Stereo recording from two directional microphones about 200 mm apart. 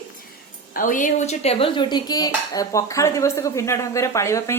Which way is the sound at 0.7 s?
40° left (ahead or behind).